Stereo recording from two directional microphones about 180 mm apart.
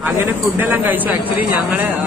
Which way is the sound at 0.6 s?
10° right (ahead or behind).